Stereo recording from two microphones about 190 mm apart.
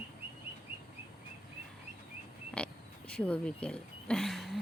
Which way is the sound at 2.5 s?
5° left (ahead or behind).